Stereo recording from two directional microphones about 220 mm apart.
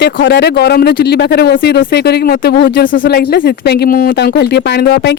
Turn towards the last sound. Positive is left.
turn(degrees=50)  # may be behind; listen again after turning